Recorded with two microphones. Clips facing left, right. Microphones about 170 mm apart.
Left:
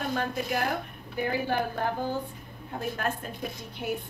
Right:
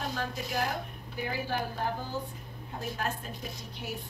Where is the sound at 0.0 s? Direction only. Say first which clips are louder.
Left 5 dB; 55° left (ahead or behind).